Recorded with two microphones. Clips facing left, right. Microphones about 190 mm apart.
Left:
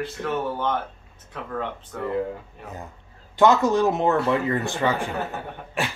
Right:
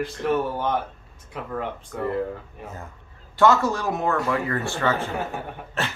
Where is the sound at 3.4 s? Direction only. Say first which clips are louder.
Left 2 dB; 20° left (ahead or behind).